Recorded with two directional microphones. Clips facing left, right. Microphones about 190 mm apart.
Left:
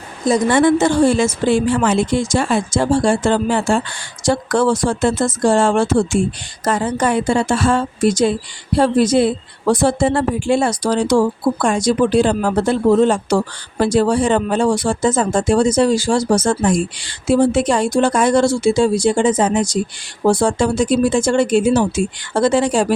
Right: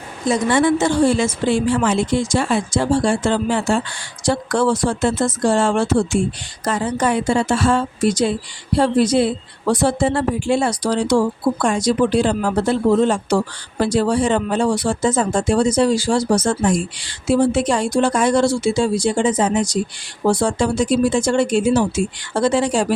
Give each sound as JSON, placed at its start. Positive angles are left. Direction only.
{"t": 0.5, "sound": "a woman's voice", "side_deg": 50}
{"t": 13.8, "sound": "a woman's voice", "side_deg": 50}